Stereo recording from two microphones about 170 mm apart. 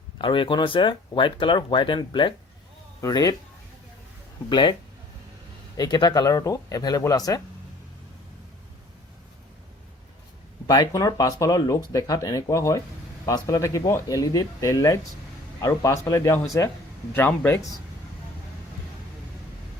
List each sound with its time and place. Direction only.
0.2 s speech: 30° left (ahead or behind)
4.4 s speech: 25° left (ahead or behind)
5.7 s speech: 25° left (ahead or behind)
10.7 s speech: 25° left (ahead or behind)